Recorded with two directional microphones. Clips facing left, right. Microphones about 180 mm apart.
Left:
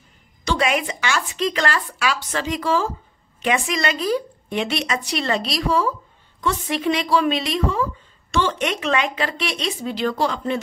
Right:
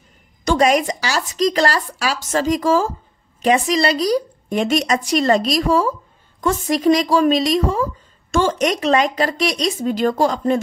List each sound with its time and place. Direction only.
0.5 s a woman's voice: 40° right (ahead or behind)